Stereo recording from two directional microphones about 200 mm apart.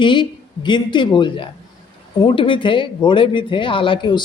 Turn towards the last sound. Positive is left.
turn(degrees=25)  # may be behind; listen again after turning